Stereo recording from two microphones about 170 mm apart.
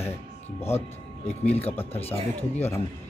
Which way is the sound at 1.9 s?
35° left (ahead or behind).